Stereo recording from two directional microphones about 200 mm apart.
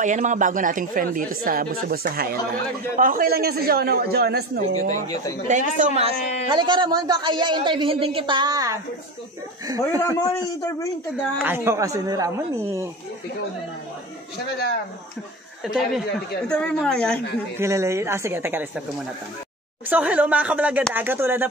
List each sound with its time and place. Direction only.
0.0 s speech: 40° right (ahead or behind)
4.9 s a man's voice: 20° left (ahead or behind)
5.5 s a man's voice: 35° right (ahead or behind); by 8.7 s 20° right (ahead or behind)
9.8 s a man's voice: 15° left (ahead or behind)
11.4 s a man's voice: 10° right (ahead or behind)
15.6 s a woman's voice: centre (ahead or behind)
17.6 s a man's voice: 15° right (ahead or behind)
19.9 s a man's voice: 10° right (ahead or behind)